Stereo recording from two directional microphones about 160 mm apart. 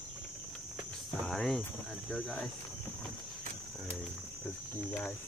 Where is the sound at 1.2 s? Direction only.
Centre (ahead or behind).